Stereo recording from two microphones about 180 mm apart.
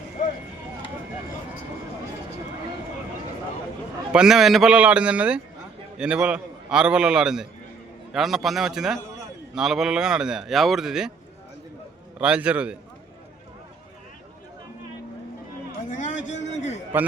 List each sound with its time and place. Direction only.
4.1 s a man's voice: 5° right (ahead or behind)
12.2 s speech: 5° right (ahead or behind)
15.9 s speech: 45° left (ahead or behind)